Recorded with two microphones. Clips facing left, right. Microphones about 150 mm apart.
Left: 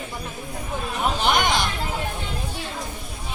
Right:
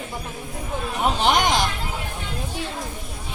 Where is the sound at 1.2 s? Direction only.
35° right (ahead or behind).